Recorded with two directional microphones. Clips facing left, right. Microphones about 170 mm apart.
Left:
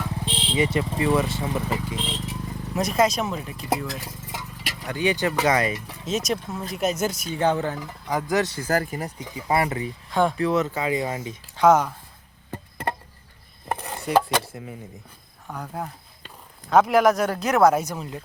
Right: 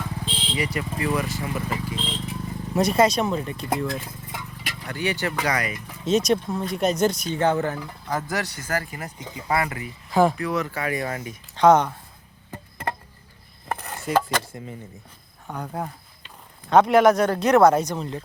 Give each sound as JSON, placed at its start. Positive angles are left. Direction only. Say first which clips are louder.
{"t": 0.5, "sound": "speech", "louder": "left 5 dB", "side_deg": 25}
{"t": 2.3, "sound": "speech", "louder": "right 3 dB", "side_deg": 0}
{"t": 6.1, "sound": "speech", "louder": "right 5 dB", "side_deg": 0}
{"t": 8.8, "sound": "speech", "louder": "left 5 dB", "side_deg": 45}
{"t": 9.5, "sound": "speech", "louder": "left 2 dB", "side_deg": 25}
{"t": 10.1, "sound": "speech", "louder": "right 3 dB", "side_deg": -5}
{"t": 10.3, "sound": "speech", "louder": "left 4 dB", "side_deg": 25}
{"t": 11.5, "sound": "speech", "louder": "right 1 dB", "side_deg": 5}
{"t": 13.7, "sound": "stir", "louder": "left 1 dB", "side_deg": 20}
{"t": 14.0, "sound": "cutlery", "louder": "left 2 dB", "side_deg": 0}
{"t": 14.4, "sound": "speech", "louder": "even", "side_deg": 0}